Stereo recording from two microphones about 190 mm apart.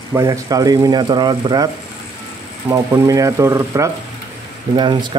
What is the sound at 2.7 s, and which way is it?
Speech, 15° right (ahead or behind).